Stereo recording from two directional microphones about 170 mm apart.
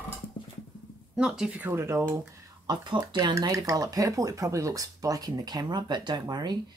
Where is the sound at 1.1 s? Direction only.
5° right (ahead or behind).